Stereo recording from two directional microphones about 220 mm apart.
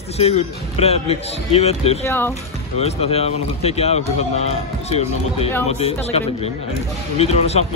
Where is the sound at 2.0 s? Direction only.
10° left (ahead or behind).